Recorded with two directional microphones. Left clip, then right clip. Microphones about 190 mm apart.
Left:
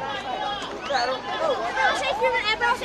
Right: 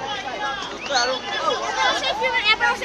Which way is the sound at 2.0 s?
55° right (ahead or behind).